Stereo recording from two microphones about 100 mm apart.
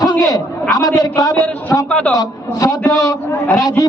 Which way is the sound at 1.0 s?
40° left (ahead or behind).